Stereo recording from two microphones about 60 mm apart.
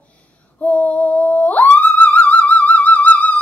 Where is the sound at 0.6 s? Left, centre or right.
Left.